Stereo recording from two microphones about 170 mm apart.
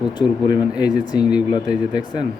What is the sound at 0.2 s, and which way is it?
Speech, 25° left (ahead or behind).